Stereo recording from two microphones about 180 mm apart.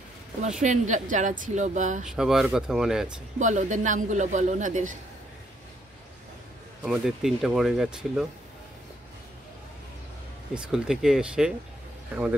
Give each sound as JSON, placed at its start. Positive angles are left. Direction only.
{"t": 0.4, "sound": "speech", "side_deg": -40}
{"t": 2.0, "sound": "speech", "side_deg": 0}
{"t": 3.3, "sound": "speech", "side_deg": -45}
{"t": 6.8, "sound": "speech", "side_deg": -5}
{"t": 10.5, "sound": "speech", "side_deg": -5}